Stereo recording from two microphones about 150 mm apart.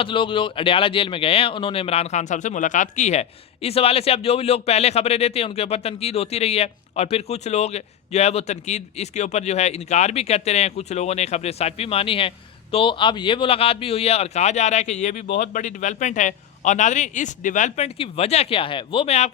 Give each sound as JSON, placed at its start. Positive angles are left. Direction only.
{"t": 0.0, "sound": "speech", "side_deg": 35}